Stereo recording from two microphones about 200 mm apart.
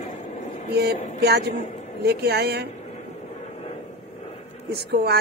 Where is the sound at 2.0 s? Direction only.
55° right (ahead or behind).